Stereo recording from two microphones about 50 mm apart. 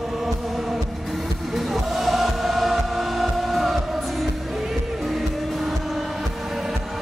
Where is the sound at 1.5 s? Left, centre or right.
Centre.